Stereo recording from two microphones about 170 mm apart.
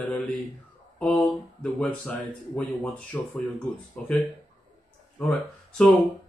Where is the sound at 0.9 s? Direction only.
5° left (ahead or behind).